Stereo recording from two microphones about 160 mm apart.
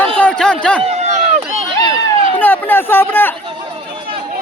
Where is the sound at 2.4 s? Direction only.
10° left (ahead or behind).